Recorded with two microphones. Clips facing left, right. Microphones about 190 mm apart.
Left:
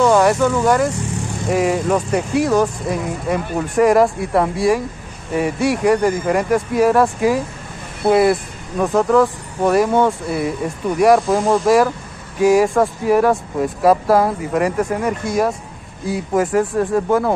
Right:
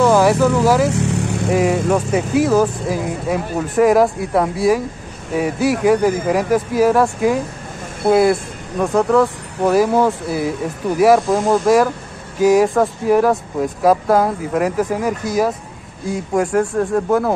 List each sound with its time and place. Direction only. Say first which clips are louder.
0.0 s speech: right 1 dB; centre (ahead or behind)
0.8 s vehicle: right 4 dB; 70° right (ahead or behind)
1.5 s speech: even; centre (ahead or behind)